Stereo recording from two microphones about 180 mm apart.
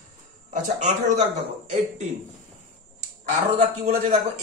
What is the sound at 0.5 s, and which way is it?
Speech, 40° right (ahead or behind).